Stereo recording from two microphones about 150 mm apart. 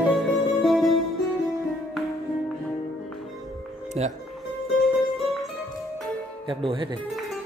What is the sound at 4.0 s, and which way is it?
Speech, 45° right (ahead or behind).